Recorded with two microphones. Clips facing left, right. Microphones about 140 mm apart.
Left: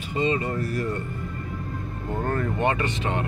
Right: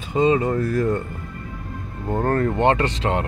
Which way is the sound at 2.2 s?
60° right (ahead or behind).